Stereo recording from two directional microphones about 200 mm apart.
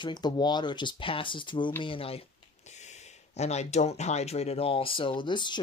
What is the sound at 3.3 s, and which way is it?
Speech, 35° left (ahead or behind).